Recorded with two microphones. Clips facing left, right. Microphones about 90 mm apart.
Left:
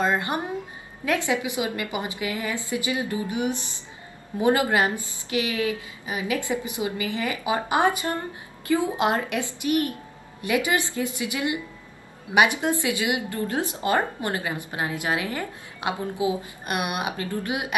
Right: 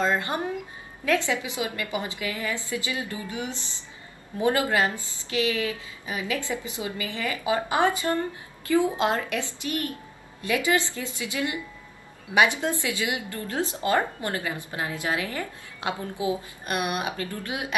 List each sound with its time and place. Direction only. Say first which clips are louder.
0.0 s a woman's voice: left 1 dB; 20° left (ahead or behind)